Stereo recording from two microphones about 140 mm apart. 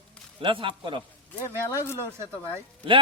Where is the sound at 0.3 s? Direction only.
35° right (ahead or behind).